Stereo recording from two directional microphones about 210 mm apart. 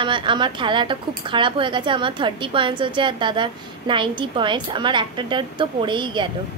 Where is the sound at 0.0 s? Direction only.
25° right (ahead or behind).